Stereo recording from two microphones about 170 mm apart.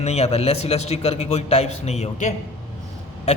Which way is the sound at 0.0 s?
40° left (ahead or behind).